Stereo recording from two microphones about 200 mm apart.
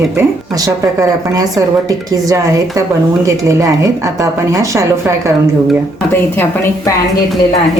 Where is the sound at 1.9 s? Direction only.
15° right (ahead or behind).